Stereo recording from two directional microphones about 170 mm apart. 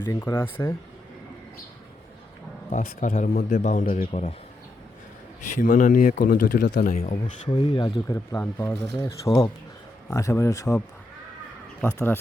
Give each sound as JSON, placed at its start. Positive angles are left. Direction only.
{"t": 0.0, "sound": "speech", "side_deg": 20}
{"t": 2.7, "sound": "a man's voice", "side_deg": 50}
{"t": 4.1, "sound": "speech", "side_deg": 35}
{"t": 5.4, "sound": "a man's voice", "side_deg": 45}
{"t": 7.4, "sound": "speech", "side_deg": 35}
{"t": 8.0, "sound": "speech", "side_deg": 20}
{"t": 11.8, "sound": "speech", "side_deg": 10}